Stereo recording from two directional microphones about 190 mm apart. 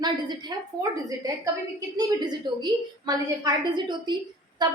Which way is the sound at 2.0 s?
20° right (ahead or behind).